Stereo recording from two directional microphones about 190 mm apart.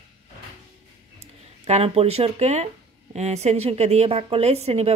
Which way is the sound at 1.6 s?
35° right (ahead or behind).